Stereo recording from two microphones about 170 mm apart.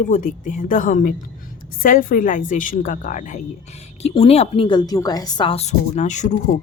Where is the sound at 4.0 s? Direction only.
35° left (ahead or behind).